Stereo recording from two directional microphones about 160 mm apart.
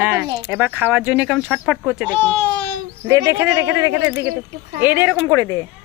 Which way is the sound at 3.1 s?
15° right (ahead or behind).